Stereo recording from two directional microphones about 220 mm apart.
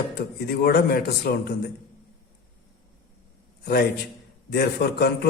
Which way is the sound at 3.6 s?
45° left (ahead or behind).